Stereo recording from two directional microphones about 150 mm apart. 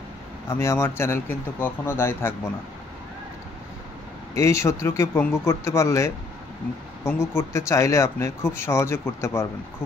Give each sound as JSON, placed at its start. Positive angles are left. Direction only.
{"t": 0.5, "sound": "speech", "side_deg": 15}
{"t": 4.4, "sound": "speech", "side_deg": 20}